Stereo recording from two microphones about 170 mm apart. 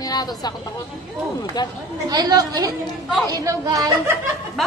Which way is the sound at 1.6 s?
25° left (ahead or behind).